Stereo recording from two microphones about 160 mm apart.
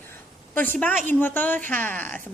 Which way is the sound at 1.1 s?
10° left (ahead or behind).